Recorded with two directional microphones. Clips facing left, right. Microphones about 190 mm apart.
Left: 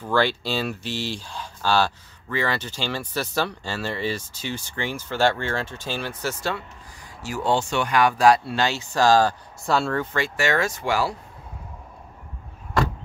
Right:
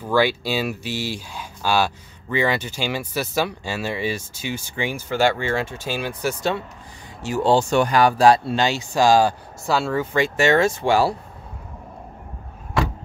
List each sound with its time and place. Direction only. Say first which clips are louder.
0.0 s speech: right 3 dB; 10° right (ahead or behind)
7.5 s speech: right 4 dB; 40° right (ahead or behind); by 10.0 s 5° right (ahead or behind)
10.1 s speech: right 8 dB; 20° right (ahead or behind)